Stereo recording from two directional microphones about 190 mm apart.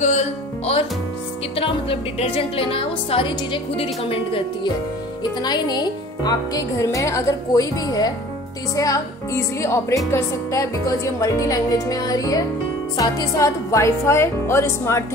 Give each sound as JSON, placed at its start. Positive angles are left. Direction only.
{"t": 0.0, "sound": "music", "side_deg": 35}
{"t": 1.6, "sound": "speech", "side_deg": 30}